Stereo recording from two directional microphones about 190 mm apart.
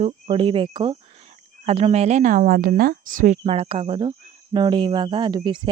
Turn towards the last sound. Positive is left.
turn(degrees=-25)  # may be behind; listen again after turning